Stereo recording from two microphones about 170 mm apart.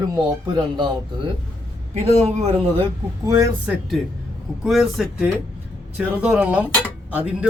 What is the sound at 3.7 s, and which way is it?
A man's voice, centre (ahead or behind).